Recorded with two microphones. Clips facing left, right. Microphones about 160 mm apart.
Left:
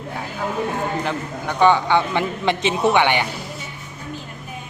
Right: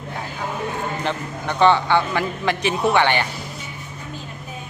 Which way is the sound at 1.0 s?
10° left (ahead or behind).